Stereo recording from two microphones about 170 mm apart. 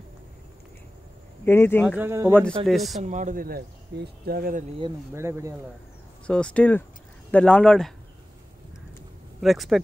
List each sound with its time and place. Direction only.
1.4 s speech: 15° left (ahead or behind)
2.0 s speech: 15° right (ahead or behind)
2.6 s speech: centre (ahead or behind)
3.0 s speech: 45° right (ahead or behind)
5.1 s speech: 15° right (ahead or behind)
6.2 s speech: 5° left (ahead or behind)
9.4 s speech: centre (ahead or behind)